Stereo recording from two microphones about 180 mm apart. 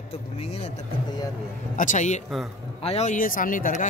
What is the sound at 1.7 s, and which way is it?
Speech, 45° left (ahead or behind).